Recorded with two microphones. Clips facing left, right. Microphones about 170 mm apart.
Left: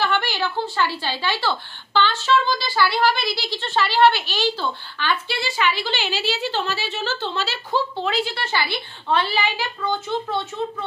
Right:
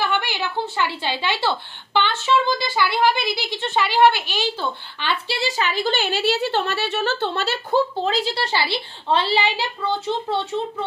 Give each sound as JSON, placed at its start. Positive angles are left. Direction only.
{"t": 0.1, "sound": "a woman's voice", "side_deg": -15}
{"t": 5.0, "sound": "a woman's voice", "side_deg": -35}
{"t": 8.0, "sound": "a woman's voice", "side_deg": -35}